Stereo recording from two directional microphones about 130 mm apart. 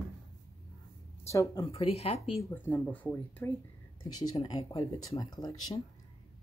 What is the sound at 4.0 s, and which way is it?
Speech, 30° left (ahead or behind).